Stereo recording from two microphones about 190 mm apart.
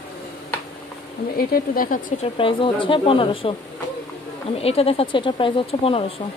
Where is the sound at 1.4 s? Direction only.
50° left (ahead or behind).